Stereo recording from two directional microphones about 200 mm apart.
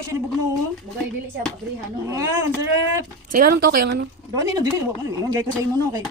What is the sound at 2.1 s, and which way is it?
Speech, 15° right (ahead or behind).